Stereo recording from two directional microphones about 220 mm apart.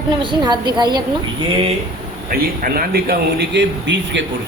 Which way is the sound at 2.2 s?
40° right (ahead or behind).